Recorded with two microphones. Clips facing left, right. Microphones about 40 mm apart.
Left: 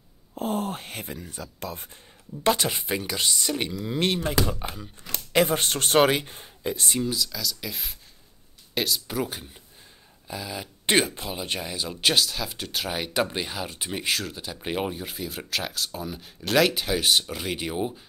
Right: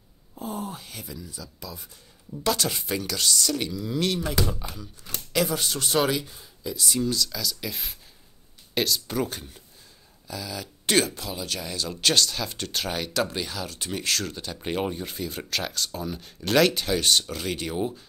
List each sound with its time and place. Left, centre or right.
0.4 s speech: left
2.4 s speech: left
7.0 s speech: centre
7.3 s speech: centre
10.2 s speech: left
11.7 s speech: centre
13.0 s speech: left